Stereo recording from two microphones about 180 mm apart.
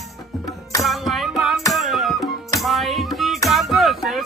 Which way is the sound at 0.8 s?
Centre (ahead or behind).